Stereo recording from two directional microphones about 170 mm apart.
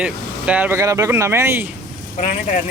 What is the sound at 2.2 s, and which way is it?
Speech, 45° left (ahead or behind).